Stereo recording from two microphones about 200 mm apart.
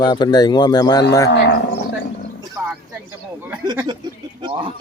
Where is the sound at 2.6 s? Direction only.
10° right (ahead or behind).